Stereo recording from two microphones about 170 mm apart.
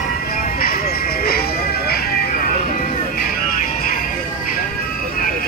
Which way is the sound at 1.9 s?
60° left (ahead or behind).